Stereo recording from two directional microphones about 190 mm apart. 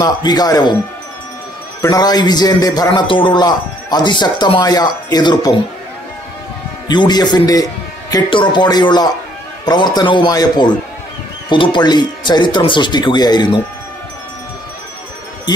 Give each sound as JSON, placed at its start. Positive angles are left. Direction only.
{"t": 0.0, "sound": "a man's voice", "side_deg": 20}
{"t": 1.8, "sound": "a man's voice", "side_deg": 20}
{"t": 6.9, "sound": "a man's voice", "side_deg": 20}